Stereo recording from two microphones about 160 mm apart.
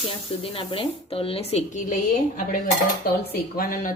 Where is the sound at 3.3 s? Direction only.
60° left (ahead or behind).